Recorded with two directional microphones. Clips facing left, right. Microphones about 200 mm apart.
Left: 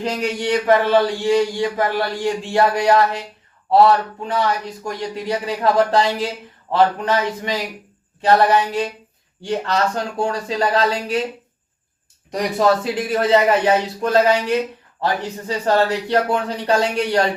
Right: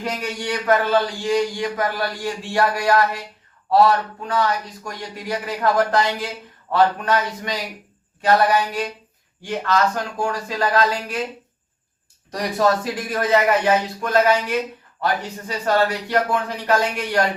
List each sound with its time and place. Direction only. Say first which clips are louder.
0.0 s speech: left 5 dB; 25° left (ahead or behind)
12.3 s speech: left 2 dB; 20° left (ahead or behind)